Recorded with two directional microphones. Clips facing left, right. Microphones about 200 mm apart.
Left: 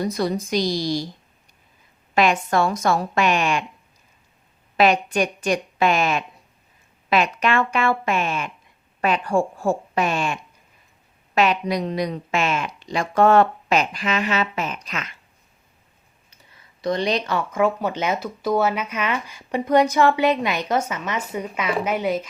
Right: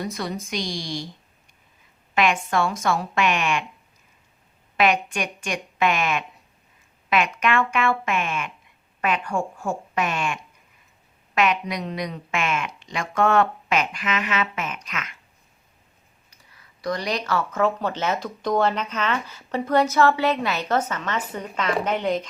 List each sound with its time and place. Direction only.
0.0 s speech: 35° left (ahead or behind)
2.1 s speech: 35° left (ahead or behind)
4.8 s a woman's voice: 35° left (ahead or behind)
16.3 s speech: 25° left (ahead or behind); by 22.3 s 10° left (ahead or behind)